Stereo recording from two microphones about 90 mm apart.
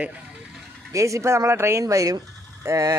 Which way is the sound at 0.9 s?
35° right (ahead or behind).